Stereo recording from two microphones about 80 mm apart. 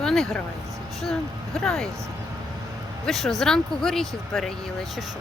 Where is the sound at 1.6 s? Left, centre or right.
Centre.